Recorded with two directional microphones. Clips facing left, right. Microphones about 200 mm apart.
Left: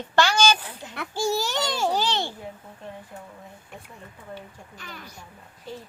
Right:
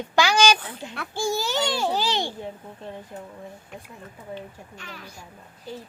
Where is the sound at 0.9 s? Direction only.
15° left (ahead or behind).